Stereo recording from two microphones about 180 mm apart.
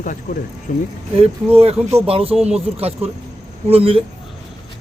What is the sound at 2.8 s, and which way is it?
Speech, 35° right (ahead or behind).